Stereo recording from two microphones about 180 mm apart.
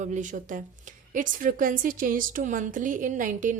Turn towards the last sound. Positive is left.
turn(degrees=-45)  # may be behind; listen again after turning